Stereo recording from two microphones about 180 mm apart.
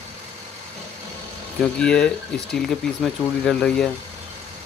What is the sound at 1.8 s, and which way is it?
Speech, 5° left (ahead or behind).